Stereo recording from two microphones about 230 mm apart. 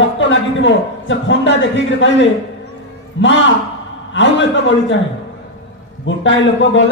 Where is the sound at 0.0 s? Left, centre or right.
Left.